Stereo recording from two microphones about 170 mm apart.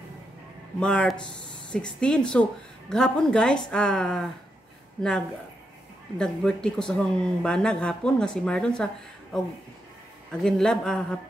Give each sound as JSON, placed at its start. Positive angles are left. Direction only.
{"t": 0.7, "sound": "speech", "side_deg": 5}
{"t": 6.1, "sound": "speech", "side_deg": 5}
{"t": 10.4, "sound": "speech", "side_deg": 5}